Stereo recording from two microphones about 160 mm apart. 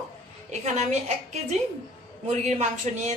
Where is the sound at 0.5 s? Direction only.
45° right (ahead or behind).